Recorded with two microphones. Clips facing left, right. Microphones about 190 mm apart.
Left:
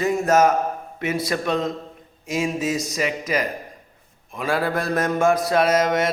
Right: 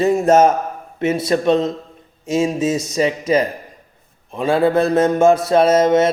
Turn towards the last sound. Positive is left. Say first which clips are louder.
# right 6 dB
turn(degrees=-25)  # may be behind; listen again after turning